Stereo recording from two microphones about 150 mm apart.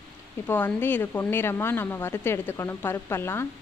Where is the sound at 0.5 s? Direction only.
15° left (ahead or behind).